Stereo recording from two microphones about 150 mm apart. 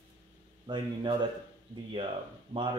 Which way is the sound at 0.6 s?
30° right (ahead or behind).